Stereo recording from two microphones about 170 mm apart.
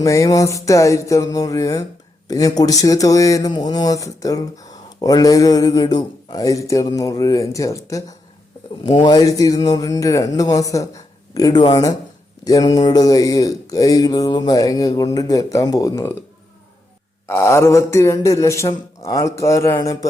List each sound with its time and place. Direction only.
0.0 s speech: 20° left (ahead or behind)
17.2 s a man's voice: 15° left (ahead or behind)